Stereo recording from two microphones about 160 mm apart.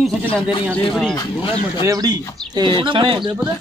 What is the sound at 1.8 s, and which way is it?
Speech, 20° right (ahead or behind).